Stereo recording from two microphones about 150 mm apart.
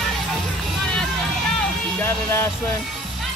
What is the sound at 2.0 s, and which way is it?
Music, 15° left (ahead or behind).